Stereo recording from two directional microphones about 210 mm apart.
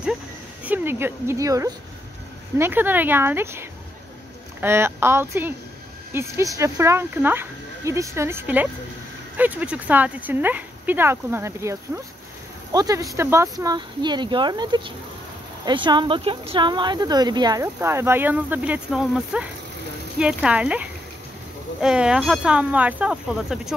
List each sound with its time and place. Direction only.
0.7 s a woman's voice: 10° right (ahead or behind)